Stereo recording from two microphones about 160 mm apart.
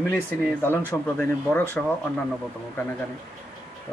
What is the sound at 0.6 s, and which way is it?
Speech, 10° left (ahead or behind).